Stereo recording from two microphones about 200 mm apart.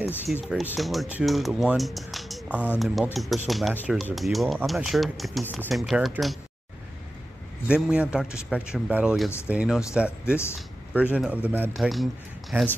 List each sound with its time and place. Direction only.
0.3 s speech: centre (ahead or behind)
7.6 s speech: 5° right (ahead or behind)